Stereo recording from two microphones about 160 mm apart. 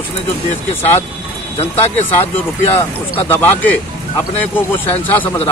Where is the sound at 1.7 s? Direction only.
15° left (ahead or behind).